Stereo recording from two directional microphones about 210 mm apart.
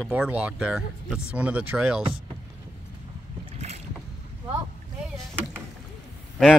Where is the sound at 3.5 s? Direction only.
30° right (ahead or behind).